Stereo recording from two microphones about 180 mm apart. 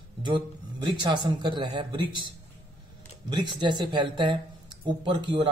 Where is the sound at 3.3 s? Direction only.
25° right (ahead or behind).